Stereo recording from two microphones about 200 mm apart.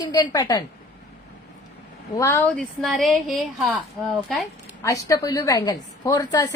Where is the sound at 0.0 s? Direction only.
20° left (ahead or behind).